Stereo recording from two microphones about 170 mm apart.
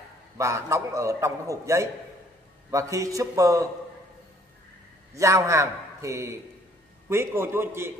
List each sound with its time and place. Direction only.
0.4 s a man's voice: 15° right (ahead or behind)
5.1 s a man's voice: 20° right (ahead or behind)